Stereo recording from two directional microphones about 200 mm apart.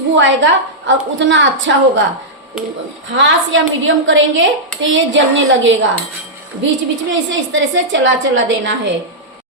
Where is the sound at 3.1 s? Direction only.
70° right (ahead or behind).